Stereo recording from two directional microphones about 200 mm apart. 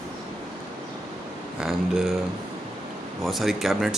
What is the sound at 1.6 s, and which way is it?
Speech, centre (ahead or behind).